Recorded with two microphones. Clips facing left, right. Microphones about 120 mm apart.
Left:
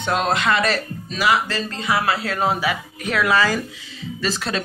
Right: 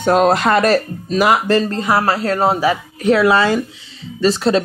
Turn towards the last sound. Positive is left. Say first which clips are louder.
# right 10 dB
turn(degrees=-30)  # may be behind; listen again after turning